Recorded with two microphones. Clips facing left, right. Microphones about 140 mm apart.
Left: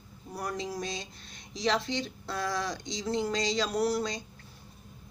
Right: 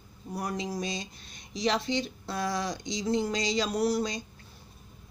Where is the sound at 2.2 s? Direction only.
15° right (ahead or behind).